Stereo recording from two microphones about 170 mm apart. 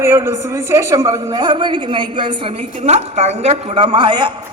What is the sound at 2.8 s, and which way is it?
A woman's voice, 40° right (ahead or behind).